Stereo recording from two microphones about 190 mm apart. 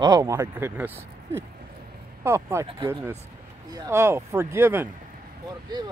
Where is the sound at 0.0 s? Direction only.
20° right (ahead or behind).